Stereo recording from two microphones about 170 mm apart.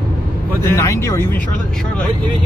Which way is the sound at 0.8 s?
15° left (ahead or behind).